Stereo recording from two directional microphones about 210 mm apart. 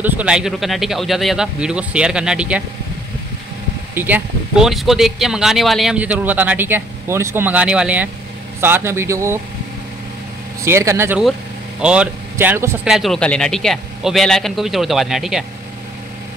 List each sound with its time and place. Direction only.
0.0 s speech: 5° right (ahead or behind)
3.9 s speech: 10° right (ahead or behind)
10.6 s speech: 15° right (ahead or behind)
12.9 s speech: centre (ahead or behind)